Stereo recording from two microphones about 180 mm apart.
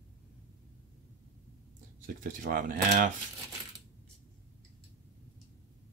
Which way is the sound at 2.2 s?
50° right (ahead or behind).